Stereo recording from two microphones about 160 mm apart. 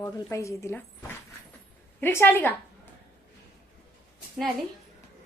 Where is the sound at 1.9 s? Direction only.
10° left (ahead or behind).